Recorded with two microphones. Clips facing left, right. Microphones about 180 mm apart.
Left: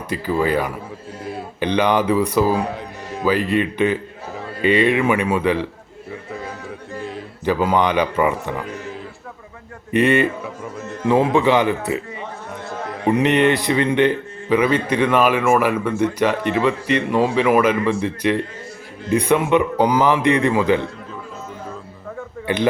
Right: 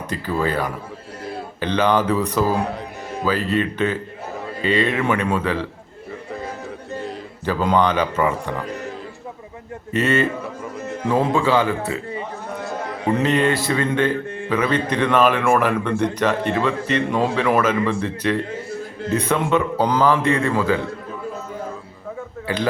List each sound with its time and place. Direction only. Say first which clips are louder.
0.1 s a man's voice: left 3 dB; 10° left (ahead or behind)
7.4 s a man's voice: left 1 dB; 10° left (ahead or behind)
9.9 s a man's voice: left 3 dB; 15° left (ahead or behind)
13.1 s a man's voice: left 3 dB; 20° left (ahead or behind)
22.5 s speech: left 3 dB; 20° left (ahead or behind)